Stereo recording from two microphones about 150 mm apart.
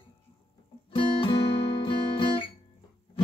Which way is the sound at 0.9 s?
35° left (ahead or behind).